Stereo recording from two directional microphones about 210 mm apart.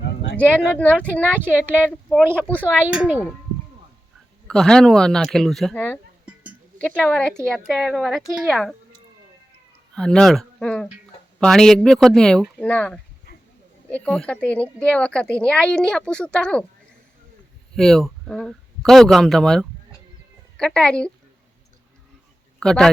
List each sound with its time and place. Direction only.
0.0 s a sound: 50° left (ahead or behind)
0.3 s speech: 5° left (ahead or behind)
2.0 s speech: 5° right (ahead or behind)
4.4 s speech: 5° left (ahead or behind)
9.9 s speech: 5° left (ahead or behind)
17.7 s speech: centre (ahead or behind)
22.6 s speech: 5° left (ahead or behind)